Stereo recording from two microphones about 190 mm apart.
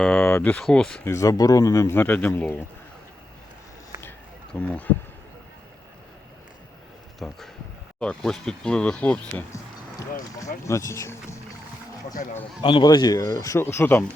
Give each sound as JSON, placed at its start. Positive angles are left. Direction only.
{"t": 0.0, "sound": "speech", "side_deg": 5}
{"t": 1.1, "sound": "a man's voice", "side_deg": 15}
{"t": 4.6, "sound": "a man's voice", "side_deg": 10}
{"t": 7.2, "sound": "speech", "side_deg": 0}
{"t": 10.7, "sound": "a man's voice", "side_deg": 15}
{"t": 12.6, "sound": "a man's voice", "side_deg": 25}